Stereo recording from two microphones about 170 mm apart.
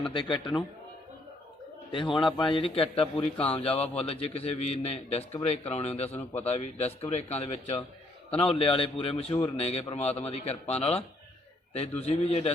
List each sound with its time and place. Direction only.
0.1 s a man's voice: 30° left (ahead or behind)
2.1 s a man's voice: 30° left (ahead or behind)